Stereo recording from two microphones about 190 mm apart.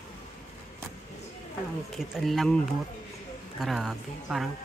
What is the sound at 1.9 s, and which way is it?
Speech, centre (ahead or behind).